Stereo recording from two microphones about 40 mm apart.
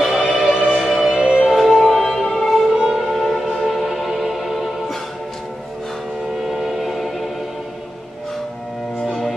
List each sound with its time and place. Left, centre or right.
0.2 s music: centre
0.7 s music: centre
1.1 s music: centre
1.4 s music: centre
2.7 s music: centre
3.1 s music: centre
6.3 s music: centre
9.0 s music: centre